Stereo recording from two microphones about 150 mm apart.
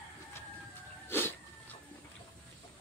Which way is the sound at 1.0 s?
15° left (ahead or behind).